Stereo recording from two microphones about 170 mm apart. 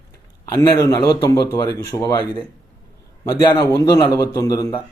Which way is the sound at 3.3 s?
20° left (ahead or behind).